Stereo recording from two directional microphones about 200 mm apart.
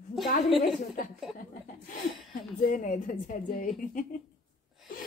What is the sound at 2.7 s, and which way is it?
A woman's voice, 40° left (ahead or behind).